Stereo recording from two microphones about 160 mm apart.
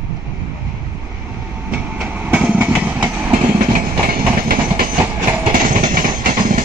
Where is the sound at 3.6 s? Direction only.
65° right (ahead or behind).